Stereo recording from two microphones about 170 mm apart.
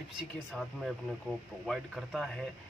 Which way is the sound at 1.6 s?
Centre (ahead or behind).